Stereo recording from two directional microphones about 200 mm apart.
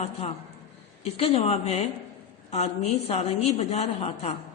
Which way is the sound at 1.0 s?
30° left (ahead or behind).